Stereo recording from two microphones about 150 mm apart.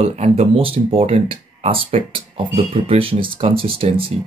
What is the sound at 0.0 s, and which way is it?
Speech, 45° right (ahead or behind).